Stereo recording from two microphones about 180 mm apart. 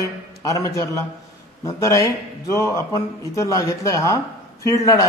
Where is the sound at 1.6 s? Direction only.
15° left (ahead or behind).